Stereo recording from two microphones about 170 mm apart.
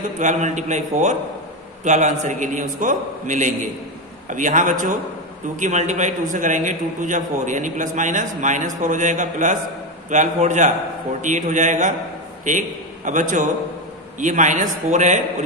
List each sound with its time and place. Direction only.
0.2 s a man's voice: 45° right (ahead or behind)